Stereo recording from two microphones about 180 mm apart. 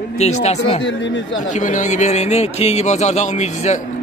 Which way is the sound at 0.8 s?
90° left.